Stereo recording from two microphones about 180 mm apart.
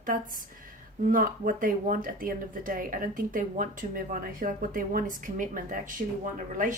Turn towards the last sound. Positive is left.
turn(degrees=-45)  # may be behind; listen again after turning